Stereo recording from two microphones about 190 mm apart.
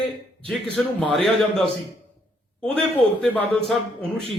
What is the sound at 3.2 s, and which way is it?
Speech, 5° left (ahead or behind).